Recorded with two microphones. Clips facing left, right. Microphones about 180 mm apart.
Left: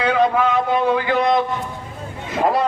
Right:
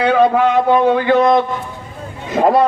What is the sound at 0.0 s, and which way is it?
Speech, 35° right (ahead or behind).